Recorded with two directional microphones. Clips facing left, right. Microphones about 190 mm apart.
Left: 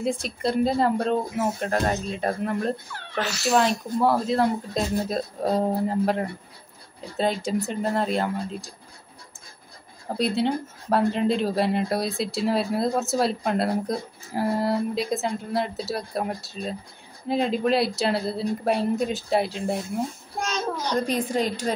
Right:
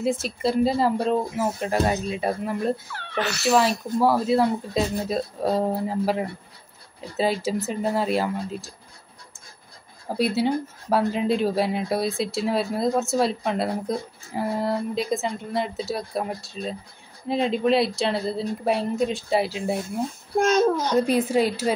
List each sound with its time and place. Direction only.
0.0 s speech: 5° right (ahead or behind)
10.0 s speech: 5° right (ahead or behind)
20.3 s a sound: 50° right (ahead or behind)
20.9 s speech: 5° right (ahead or behind)